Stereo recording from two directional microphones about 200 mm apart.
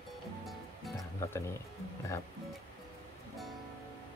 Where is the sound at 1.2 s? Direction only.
15° left (ahead or behind).